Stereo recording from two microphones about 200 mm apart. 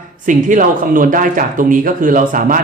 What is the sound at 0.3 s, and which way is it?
Speech, 40° right (ahead or behind).